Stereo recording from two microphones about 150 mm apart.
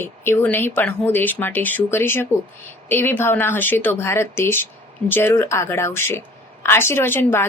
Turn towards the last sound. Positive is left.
turn(degrees=15)  # may be behind; listen again after turning